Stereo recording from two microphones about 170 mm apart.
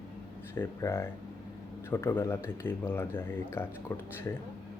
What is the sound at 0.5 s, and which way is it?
Speech, 15° left (ahead or behind).